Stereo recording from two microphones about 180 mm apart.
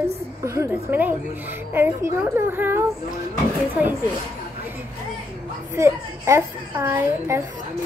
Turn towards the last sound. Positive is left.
turn(degrees=-15)  # may be behind; listen again after turning